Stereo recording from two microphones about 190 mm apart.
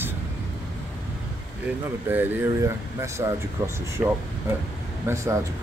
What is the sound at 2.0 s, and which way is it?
Speech, 10° right (ahead or behind).